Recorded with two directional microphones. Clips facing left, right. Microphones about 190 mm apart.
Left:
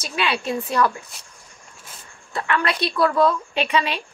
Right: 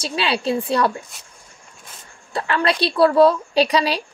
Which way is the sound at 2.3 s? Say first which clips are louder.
Right 3 dB; 30° right (ahead or behind).